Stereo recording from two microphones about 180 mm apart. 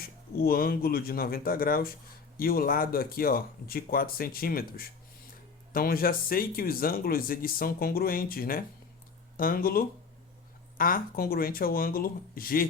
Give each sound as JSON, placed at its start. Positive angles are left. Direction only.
{"t": 0.0, "sound": "speech", "side_deg": 55}